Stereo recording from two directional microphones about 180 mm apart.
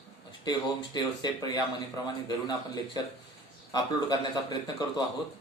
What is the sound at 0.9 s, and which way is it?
Speech, 20° left (ahead or behind).